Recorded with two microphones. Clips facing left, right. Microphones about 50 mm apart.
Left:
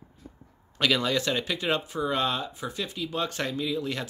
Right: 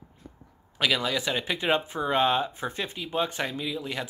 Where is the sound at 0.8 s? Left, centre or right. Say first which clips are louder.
Left 1 dB; centre.